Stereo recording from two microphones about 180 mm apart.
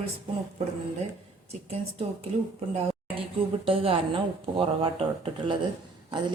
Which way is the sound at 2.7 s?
30° right (ahead or behind).